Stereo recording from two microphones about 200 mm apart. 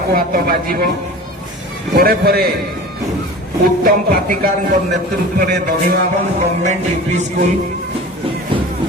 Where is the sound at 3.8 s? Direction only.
45° right (ahead or behind).